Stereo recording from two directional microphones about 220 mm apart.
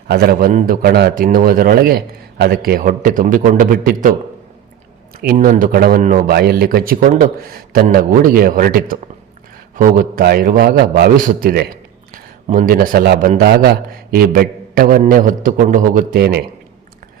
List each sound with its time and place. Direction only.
0.1 s a man's voice: 45° right (ahead or behind)
5.2 s a man's voice: 40° right (ahead or behind)